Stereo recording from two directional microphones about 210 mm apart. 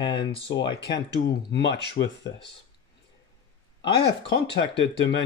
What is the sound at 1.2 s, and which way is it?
Speech, 55° left (ahead or behind).